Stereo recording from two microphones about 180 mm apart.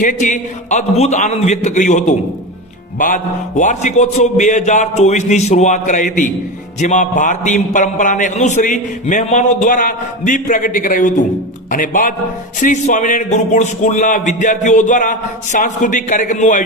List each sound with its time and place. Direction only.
0.0 s a man's voice: 45° left (ahead or behind)
3.6 s a man's voice: 40° left (ahead or behind)